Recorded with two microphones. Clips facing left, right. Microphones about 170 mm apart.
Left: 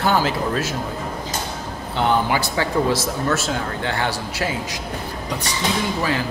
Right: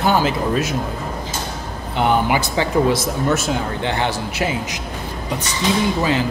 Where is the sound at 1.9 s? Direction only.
15° right (ahead or behind).